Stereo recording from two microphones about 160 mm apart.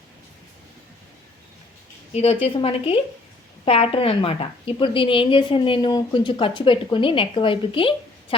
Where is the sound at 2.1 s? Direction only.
40° left (ahead or behind).